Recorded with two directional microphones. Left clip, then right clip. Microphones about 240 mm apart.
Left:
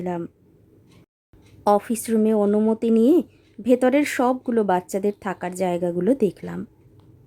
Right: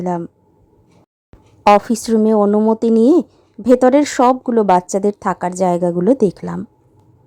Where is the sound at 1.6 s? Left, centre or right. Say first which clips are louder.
Right 8 dB; centre.